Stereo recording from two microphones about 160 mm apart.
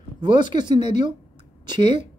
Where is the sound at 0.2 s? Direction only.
30° right (ahead or behind).